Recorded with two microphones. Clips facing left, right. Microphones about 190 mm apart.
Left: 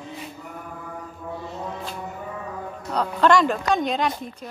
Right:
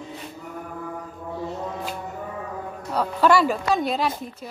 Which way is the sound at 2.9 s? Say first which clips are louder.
Even; 10° right (ahead or behind).